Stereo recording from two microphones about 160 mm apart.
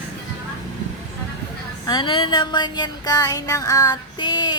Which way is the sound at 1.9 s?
30° left (ahead or behind).